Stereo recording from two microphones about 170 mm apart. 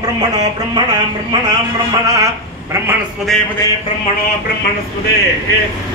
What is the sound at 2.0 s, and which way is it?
Speech, 20° right (ahead or behind).